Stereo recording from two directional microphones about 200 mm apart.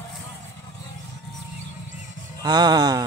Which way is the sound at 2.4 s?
20° right (ahead or behind).